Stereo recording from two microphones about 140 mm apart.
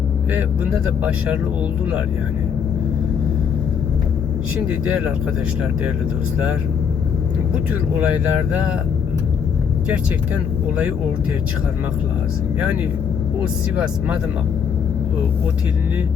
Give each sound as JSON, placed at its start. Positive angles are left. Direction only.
{"t": 4.6, "sound": "speech", "side_deg": -10}
{"t": 7.9, "sound": "speech", "side_deg": -10}